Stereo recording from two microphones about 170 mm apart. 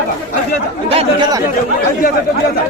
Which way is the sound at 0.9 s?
25° right (ahead or behind).